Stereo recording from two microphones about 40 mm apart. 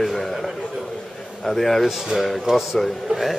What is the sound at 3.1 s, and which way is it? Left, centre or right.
Speech, centre.